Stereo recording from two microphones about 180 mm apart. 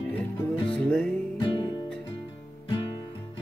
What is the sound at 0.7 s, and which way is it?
Music, 5° left (ahead or behind).